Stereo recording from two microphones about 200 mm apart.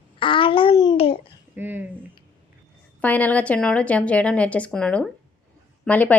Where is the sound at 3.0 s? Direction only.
10° left (ahead or behind).